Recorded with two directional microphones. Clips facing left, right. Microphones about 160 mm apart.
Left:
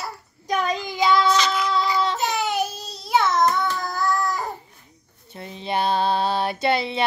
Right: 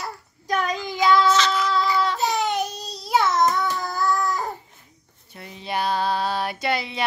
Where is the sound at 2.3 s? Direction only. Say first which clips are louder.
Even; 5° left (ahead or behind).